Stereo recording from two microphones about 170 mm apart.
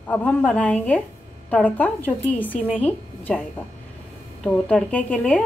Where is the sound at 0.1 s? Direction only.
10° left (ahead or behind).